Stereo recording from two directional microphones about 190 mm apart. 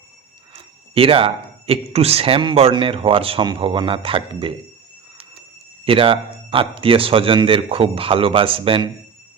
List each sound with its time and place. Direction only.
0.5 s speech: 30° right (ahead or behind)
5.8 s speech: 30° right (ahead or behind)